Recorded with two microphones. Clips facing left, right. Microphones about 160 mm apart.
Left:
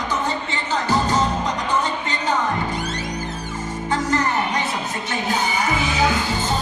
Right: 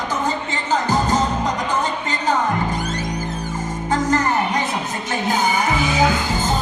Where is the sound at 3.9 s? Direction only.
45° right (ahead or behind).